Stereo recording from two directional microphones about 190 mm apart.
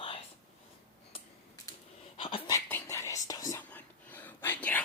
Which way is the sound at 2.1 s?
30° left (ahead or behind).